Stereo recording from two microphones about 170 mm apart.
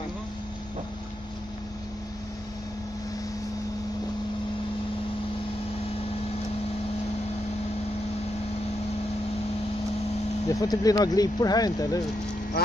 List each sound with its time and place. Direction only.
10.5 s speech: 20° left (ahead or behind)
12.6 s duck: 65° left (ahead or behind)